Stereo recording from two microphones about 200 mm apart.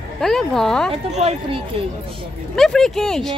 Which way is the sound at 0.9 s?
30° right (ahead or behind).